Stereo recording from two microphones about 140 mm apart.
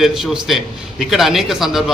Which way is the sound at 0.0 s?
Centre (ahead or behind).